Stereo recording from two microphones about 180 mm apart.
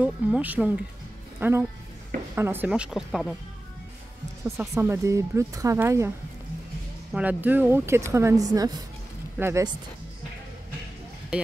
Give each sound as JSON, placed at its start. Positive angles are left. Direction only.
{"t": 0.0, "sound": "speech", "side_deg": -10}
{"t": 4.5, "sound": "speech", "side_deg": -15}